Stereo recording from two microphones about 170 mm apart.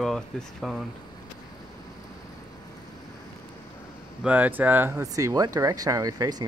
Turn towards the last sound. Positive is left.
turn(degrees=-20)  # may be behind; listen again after turning